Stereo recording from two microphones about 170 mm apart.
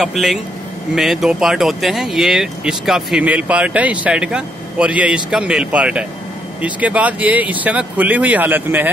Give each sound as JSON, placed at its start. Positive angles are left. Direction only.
{"t": 0.0, "sound": "speech", "side_deg": 0}